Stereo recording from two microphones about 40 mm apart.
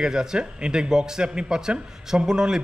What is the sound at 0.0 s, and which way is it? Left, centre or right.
Speech, centre.